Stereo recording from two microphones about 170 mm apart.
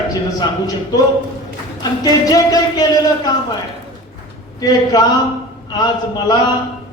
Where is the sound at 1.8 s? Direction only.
20° left (ahead or behind).